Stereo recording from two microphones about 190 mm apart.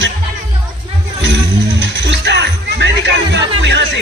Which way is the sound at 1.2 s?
70° right (ahead or behind).